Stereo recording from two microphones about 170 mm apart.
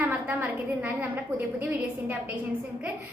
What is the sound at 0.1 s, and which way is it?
A woman's voice, 10° right (ahead or behind).